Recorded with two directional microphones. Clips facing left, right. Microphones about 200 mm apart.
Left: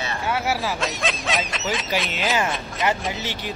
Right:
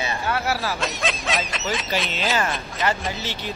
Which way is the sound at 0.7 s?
Centre (ahead or behind).